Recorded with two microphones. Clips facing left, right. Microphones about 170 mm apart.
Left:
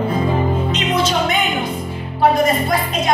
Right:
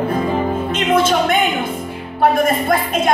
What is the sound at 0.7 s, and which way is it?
Music, 50° right (ahead or behind).